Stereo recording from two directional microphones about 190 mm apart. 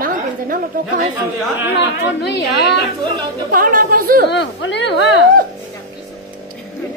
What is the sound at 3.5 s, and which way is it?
Speech, 50° right (ahead or behind).